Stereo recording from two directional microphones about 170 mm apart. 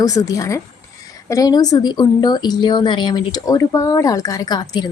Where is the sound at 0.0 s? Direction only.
20° left (ahead or behind).